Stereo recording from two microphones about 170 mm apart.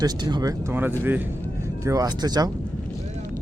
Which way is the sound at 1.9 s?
20° right (ahead or behind).